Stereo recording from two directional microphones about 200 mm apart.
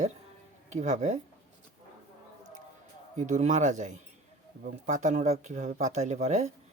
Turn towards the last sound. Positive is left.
turn(degrees=-35)  # may be behind; listen again after turning